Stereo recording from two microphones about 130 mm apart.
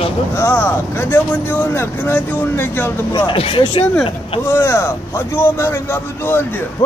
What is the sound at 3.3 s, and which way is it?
Speech, 45° left (ahead or behind).